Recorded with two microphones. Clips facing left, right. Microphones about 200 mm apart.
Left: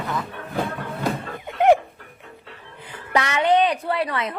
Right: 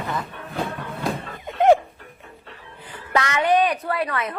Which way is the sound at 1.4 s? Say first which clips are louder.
Right 1 dB; 15° left (ahead or behind).